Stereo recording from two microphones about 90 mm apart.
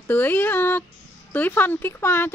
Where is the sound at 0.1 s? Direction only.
20° left (ahead or behind).